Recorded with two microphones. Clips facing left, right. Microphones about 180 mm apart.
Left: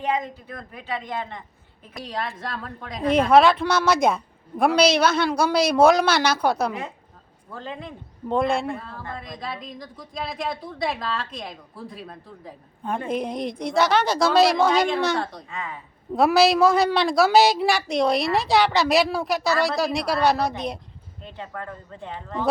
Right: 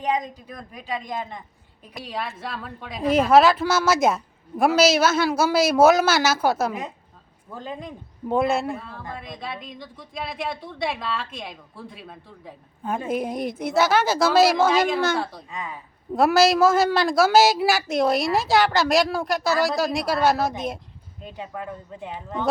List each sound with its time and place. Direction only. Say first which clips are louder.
0.0 s a woman's voice: even; 20° right (ahead or behind)
7.5 s speech: right 1 dB; 15° right (ahead or behind)
8.4 s a woman's voice: right 1 dB; 5° right (ahead or behind)
15.4 s speech: even; 15° right (ahead or behind)
15.7 s a woman's voice: even; centre (ahead or behind)